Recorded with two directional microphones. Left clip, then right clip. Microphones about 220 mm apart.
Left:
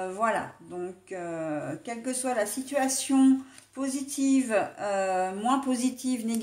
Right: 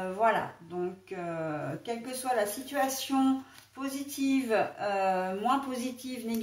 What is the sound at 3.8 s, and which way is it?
Speech, 40° left (ahead or behind).